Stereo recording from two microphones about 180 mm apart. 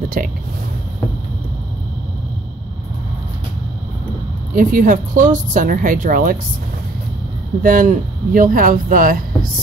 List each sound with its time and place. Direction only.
0.2 s speech: 50° right (ahead or behind)
4.6 s speech: 50° right (ahead or behind)
7.6 s speech: 50° right (ahead or behind)